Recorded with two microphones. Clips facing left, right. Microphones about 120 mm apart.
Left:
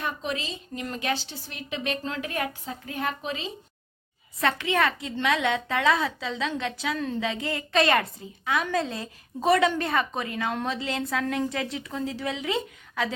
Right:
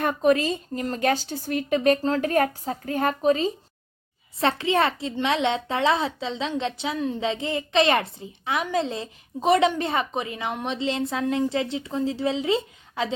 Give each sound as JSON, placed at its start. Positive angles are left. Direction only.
{"t": 0.0, "sound": "speech", "side_deg": -50}
{"t": 4.4, "sound": "a woman's voice", "side_deg": -30}